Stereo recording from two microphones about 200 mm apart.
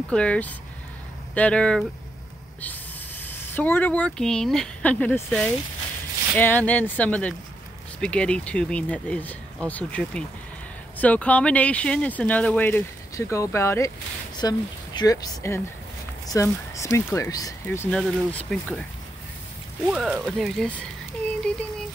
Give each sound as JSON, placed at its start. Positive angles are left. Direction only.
{"t": 0.1, "sound": "speech", "side_deg": 5}
{"t": 3.3, "sound": "speech", "side_deg": 10}
{"t": 17.9, "sound": "speech", "side_deg": 5}
{"t": 19.9, "sound": "speech", "side_deg": 0}